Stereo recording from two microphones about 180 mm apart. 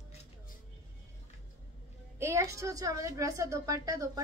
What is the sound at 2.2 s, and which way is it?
A woman's voice, 15° right (ahead or behind).